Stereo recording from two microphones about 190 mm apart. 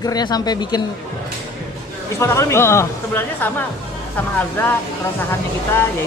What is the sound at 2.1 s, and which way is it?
Speech, 15° left (ahead or behind).